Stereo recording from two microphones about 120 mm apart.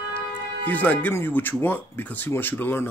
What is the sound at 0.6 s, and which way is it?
Speech, 15° left (ahead or behind).